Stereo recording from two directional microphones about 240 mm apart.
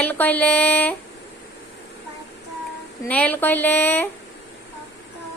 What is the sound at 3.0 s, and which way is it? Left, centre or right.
Speech, centre.